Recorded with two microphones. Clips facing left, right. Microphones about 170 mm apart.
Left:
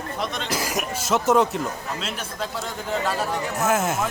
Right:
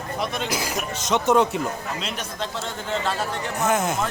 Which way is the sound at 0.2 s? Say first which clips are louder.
Right 1 dB; centre (ahead or behind).